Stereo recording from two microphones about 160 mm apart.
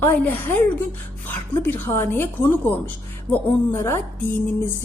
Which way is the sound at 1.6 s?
15° left (ahead or behind).